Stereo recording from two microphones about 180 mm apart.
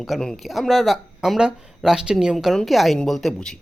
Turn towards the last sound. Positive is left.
turn(degrees=0)  # may be behind; listen again after turning